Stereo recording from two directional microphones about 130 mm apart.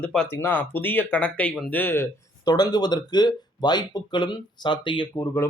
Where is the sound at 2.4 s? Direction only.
30° left (ahead or behind).